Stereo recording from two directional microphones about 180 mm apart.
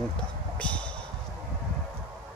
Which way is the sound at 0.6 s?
5° left (ahead or behind).